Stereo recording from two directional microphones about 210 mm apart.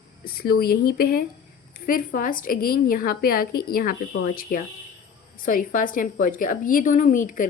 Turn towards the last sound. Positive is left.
turn(degrees=40)  # may be behind; listen again after turning